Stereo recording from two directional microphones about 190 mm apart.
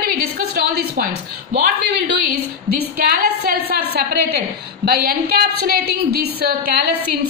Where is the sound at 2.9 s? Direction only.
50° right (ahead or behind).